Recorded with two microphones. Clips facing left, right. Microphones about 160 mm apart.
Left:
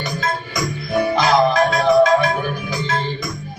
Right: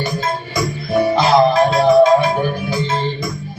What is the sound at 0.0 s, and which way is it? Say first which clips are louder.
Music: right 3 dB; 25° right (ahead or behind).